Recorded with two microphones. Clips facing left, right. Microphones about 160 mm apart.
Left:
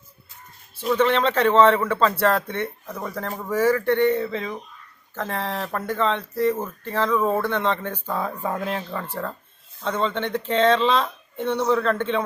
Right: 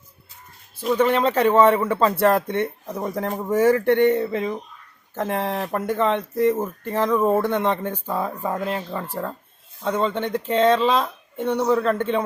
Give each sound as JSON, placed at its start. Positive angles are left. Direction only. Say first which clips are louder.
{"t": 0.9, "sound": "a man's voice", "louder": "right 1 dB", "side_deg": -10}
{"t": 8.9, "sound": "a man's voice", "louder": "right 1 dB", "side_deg": -10}